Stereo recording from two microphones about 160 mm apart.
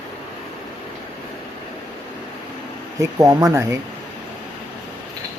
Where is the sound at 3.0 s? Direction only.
20° right (ahead or behind).